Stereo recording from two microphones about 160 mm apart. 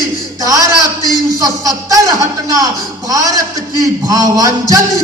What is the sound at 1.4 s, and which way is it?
A man's voice, 20° right (ahead or behind).